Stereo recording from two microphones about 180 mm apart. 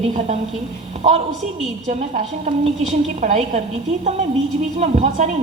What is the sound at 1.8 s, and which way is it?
A woman's voice, 40° right (ahead or behind).